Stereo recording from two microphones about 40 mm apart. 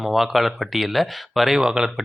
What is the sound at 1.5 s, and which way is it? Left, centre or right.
Speech, centre.